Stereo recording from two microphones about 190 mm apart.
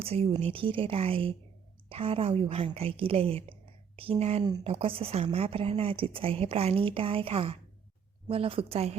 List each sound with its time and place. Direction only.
0.0 s a woman's voice: 30° right (ahead or behind)